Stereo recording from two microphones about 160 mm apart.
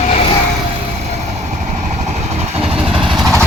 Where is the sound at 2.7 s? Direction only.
5° right (ahead or behind).